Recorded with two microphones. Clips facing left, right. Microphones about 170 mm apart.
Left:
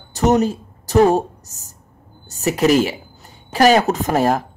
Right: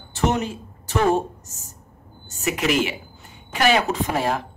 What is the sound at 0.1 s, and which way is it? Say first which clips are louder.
A woman's voice: left 7 dB; 40° left (ahead or behind).